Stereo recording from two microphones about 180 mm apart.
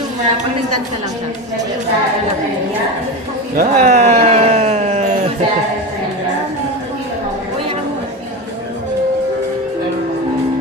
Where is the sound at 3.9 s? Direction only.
40° right (ahead or behind).